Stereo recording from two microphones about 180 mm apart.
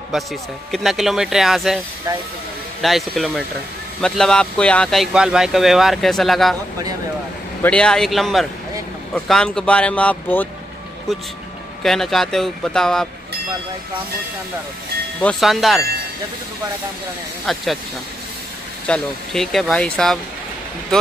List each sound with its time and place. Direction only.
0.1 s speech: centre (ahead or behind)
2.1 s speech: 15° right (ahead or behind)
2.8 s speech: centre (ahead or behind)
7.6 s speech: 5° left (ahead or behind)
11.8 s speech: centre (ahead or behind)
15.2 s speech: centre (ahead or behind)
17.5 s speech: centre (ahead or behind)
18.9 s speech: centre (ahead or behind)